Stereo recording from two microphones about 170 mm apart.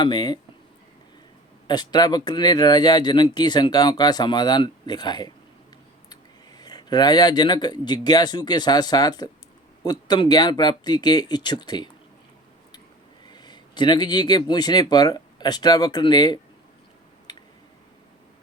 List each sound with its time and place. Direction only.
0.0 s speech: 25° left (ahead or behind)
1.6 s speech: 25° left (ahead or behind)
13.2 s speech: 25° left (ahead or behind)
17.3 s a sound: 25° left (ahead or behind)